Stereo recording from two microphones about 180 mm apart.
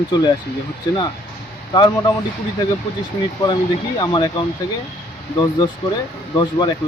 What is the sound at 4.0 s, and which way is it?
Speech, 25° left (ahead or behind).